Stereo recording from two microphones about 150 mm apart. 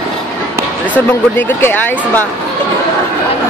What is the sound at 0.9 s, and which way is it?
Speech, 10° left (ahead or behind).